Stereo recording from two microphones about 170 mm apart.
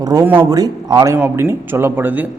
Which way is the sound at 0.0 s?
20° right (ahead or behind).